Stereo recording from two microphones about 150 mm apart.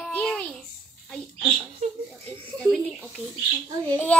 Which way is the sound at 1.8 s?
50° right (ahead or behind).